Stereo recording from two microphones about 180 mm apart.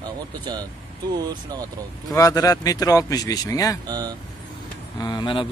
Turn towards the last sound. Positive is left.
turn(degrees=25)  # may be behind; listen again after turning